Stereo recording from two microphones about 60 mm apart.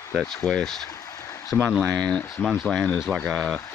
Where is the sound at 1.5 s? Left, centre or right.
Left.